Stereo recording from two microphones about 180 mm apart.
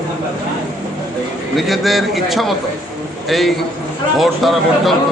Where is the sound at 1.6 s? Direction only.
Centre (ahead or behind).